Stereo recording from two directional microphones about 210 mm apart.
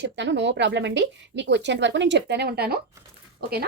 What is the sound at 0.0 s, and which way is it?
Speech, 55° right (ahead or behind).